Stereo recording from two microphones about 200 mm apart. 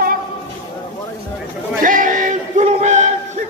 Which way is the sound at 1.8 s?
40° right (ahead or behind).